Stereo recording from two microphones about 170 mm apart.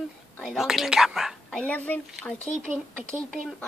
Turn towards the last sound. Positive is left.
turn(degrees=5)  # may be behind; listen again after turning